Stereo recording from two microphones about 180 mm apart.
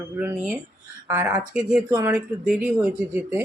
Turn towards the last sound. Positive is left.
turn(degrees=-10)  # may be behind; listen again after turning